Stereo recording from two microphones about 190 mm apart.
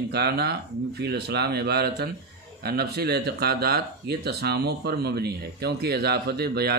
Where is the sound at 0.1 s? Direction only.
60° right (ahead or behind).